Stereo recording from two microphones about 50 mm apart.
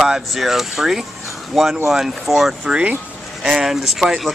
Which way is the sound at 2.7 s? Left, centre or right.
Right.